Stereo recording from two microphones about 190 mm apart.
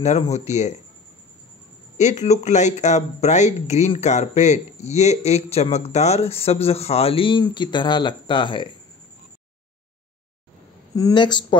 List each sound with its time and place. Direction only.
0.0 s speech: 35° left (ahead or behind)
2.0 s speech: 35° left (ahead or behind)
11.0 s speech: 20° left (ahead or behind)